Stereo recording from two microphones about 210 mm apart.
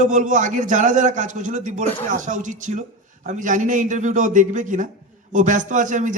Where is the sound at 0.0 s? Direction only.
35° right (ahead or behind).